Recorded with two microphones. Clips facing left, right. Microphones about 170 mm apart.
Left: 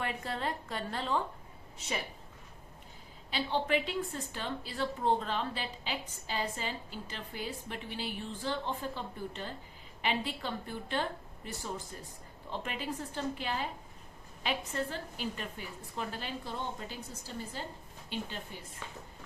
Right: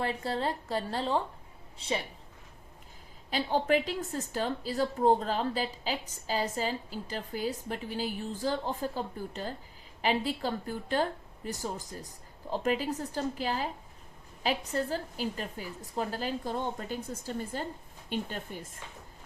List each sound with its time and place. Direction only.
0.0 s a woman's voice: 30° right (ahead or behind)
3.2 s a woman's voice: 40° right (ahead or behind)